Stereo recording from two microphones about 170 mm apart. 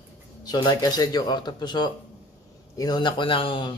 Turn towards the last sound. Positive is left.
turn(degrees=30)  # may be behind; listen again after turning